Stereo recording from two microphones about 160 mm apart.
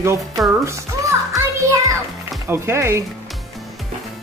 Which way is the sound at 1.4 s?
20° right (ahead or behind).